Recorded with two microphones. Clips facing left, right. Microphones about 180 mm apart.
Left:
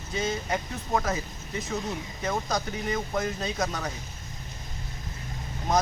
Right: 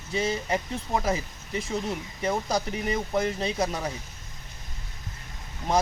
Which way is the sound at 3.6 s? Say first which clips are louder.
Right 1 dB; 10° right (ahead or behind).